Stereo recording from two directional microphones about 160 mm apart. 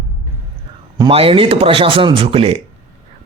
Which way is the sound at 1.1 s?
35° right (ahead or behind).